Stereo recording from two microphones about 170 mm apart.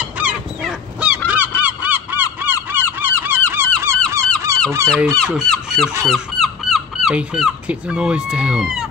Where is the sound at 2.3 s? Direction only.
10° right (ahead or behind).